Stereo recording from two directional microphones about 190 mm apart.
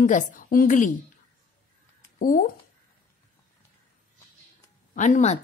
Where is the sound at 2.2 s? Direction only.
45° left (ahead or behind).